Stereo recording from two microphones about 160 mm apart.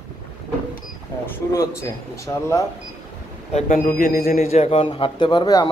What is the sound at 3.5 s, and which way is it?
Speech, 50° left (ahead or behind).